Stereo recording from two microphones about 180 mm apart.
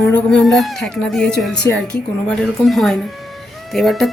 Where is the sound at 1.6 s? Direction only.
25° right (ahead or behind).